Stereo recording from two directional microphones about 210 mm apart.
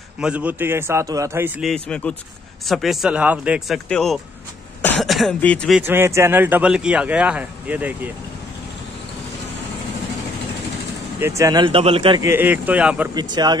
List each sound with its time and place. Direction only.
0.2 s speech: 5° right (ahead or behind)
5.8 s speech: 10° right (ahead or behind)
11.1 s speech: 15° right (ahead or behind)
12.2 s speech: 10° right (ahead or behind)
13.1 s speech: 20° right (ahead or behind)